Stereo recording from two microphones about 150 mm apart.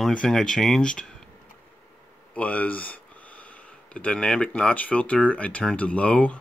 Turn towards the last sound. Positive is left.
turn(degrees=10)  # may be behind; listen again after turning